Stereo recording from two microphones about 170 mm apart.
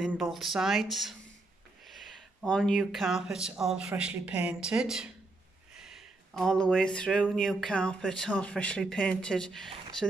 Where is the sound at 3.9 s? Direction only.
5° right (ahead or behind).